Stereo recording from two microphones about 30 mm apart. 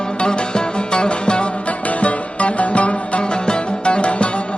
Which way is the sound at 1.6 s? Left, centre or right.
Left.